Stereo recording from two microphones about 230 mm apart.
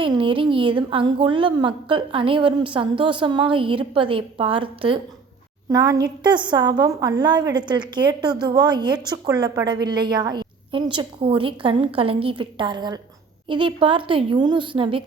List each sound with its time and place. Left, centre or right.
0.0 s a woman's voice: right